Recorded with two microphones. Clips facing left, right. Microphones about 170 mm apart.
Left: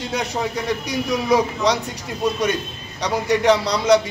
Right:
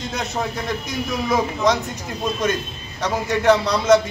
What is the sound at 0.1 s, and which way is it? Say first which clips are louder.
A man's voice: left 3 dB; 10° left (ahead or behind).